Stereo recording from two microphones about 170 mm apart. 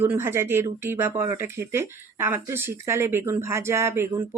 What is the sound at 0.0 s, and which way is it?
Speech, 15° right (ahead or behind).